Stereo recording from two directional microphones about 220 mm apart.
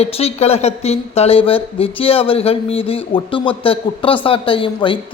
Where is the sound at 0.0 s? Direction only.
30° left (ahead or behind).